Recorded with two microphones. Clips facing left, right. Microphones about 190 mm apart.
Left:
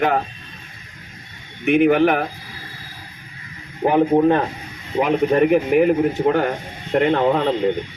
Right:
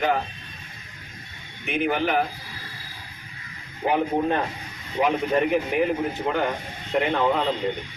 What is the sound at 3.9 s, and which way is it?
A man's voice, 55° left (ahead or behind).